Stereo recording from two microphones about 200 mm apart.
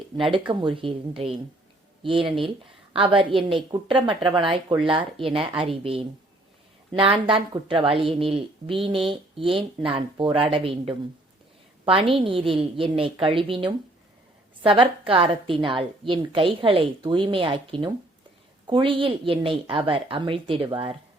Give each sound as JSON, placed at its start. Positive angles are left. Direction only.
{"t": 0.3, "sound": "a woman's voice", "side_deg": -25}